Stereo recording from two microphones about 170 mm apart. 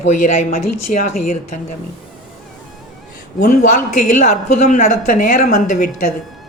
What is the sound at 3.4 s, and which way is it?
Speech, 50° left (ahead or behind).